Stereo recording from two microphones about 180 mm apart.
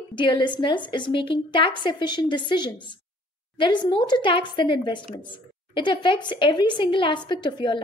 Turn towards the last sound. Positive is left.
turn(degrees=25)  # may be behind; listen again after turning